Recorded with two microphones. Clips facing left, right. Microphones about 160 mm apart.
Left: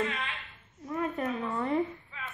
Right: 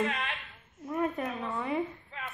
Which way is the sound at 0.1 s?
55° right (ahead or behind).